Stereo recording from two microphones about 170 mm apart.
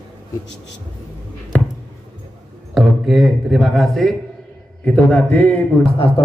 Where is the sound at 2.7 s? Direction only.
Centre (ahead or behind).